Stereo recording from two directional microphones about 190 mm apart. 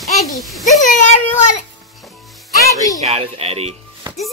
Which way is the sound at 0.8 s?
40° left (ahead or behind).